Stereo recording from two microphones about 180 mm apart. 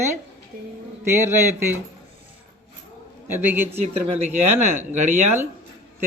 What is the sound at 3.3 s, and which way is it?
Speech, 10° right (ahead or behind).